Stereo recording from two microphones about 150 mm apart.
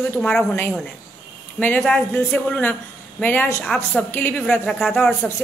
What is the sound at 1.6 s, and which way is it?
A woman's voice, 10° left (ahead or behind).